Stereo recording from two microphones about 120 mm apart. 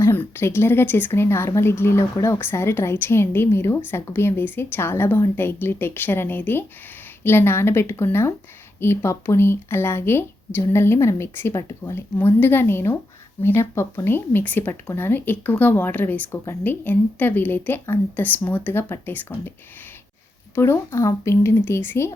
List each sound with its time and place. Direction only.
0.0 s speech: 20° left (ahead or behind)
20.6 s speech: 25° left (ahead or behind)